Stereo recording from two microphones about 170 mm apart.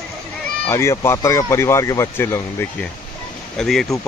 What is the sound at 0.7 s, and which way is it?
Speech, 15° left (ahead or behind).